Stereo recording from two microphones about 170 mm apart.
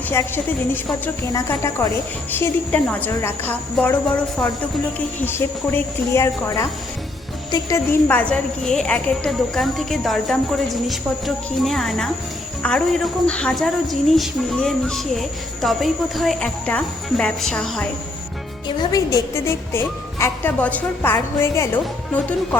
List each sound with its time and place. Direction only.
0.7 s a woman's voice: 10° left (ahead or behind)
18.8 s a woman's voice: 20° left (ahead or behind)